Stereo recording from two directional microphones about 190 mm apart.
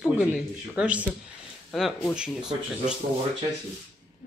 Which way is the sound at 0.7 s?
5° right (ahead or behind).